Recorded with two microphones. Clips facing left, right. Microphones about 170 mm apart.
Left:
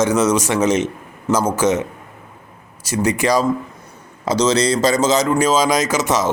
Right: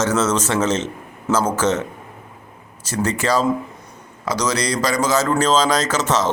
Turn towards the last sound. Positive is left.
turn(degrees=10)  # may be behind; listen again after turning